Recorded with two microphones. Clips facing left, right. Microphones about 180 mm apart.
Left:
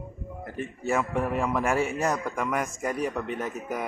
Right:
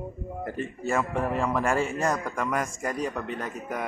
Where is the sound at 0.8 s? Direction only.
Centre (ahead or behind).